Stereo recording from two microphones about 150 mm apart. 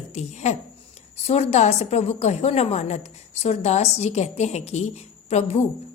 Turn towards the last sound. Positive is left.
turn(degrees=45)  # may be behind; listen again after turning